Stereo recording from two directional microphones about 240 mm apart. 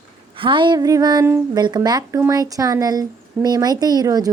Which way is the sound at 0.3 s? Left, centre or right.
Right.